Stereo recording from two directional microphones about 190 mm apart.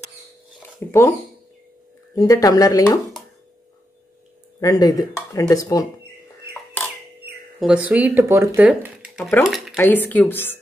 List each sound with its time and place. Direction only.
0.6 s a sound: 15° left (ahead or behind)
2.1 s speech: 15° left (ahead or behind)
4.6 s speech: 20° left (ahead or behind)
7.6 s speech: 5° right (ahead or behind)
9.8 s speech: 10° left (ahead or behind)